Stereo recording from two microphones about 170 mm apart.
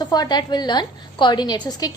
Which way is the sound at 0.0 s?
25° left (ahead or behind).